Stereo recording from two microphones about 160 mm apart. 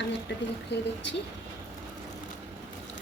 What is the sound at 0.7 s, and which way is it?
Speech, 90° left.